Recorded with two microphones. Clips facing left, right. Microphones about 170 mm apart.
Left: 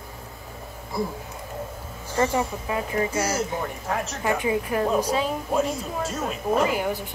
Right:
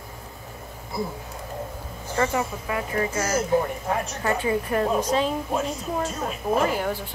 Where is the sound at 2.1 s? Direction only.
25° left (ahead or behind); by 5.3 s 5° left (ahead or behind).